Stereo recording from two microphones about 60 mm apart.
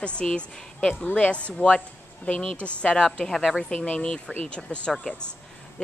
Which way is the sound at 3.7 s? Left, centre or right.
Left.